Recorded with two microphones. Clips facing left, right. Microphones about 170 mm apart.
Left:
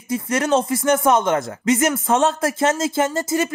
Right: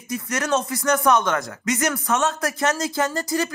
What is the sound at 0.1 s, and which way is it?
Speech, 25° left (ahead or behind).